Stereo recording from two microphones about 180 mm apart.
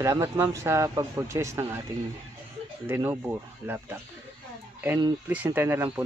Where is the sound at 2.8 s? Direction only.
15° right (ahead or behind).